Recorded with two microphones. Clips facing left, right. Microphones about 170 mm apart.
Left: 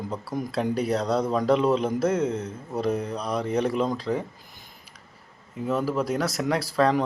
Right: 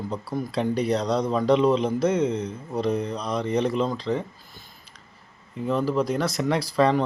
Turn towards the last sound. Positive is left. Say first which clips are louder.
# right 1 dB
turn(degrees=5)  # may be behind; listen again after turning